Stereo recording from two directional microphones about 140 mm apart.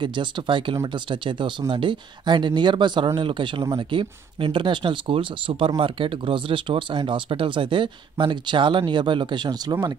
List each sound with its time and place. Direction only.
0.0 s speech: 35° right (ahead or behind)